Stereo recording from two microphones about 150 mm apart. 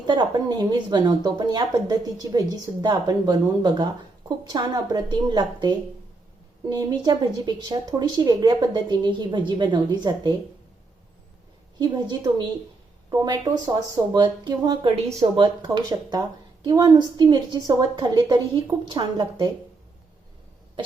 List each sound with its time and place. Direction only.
0.1 s speech: 30° right (ahead or behind)
7.0 s speech: 25° right (ahead or behind)
11.8 s speech: 30° right (ahead or behind)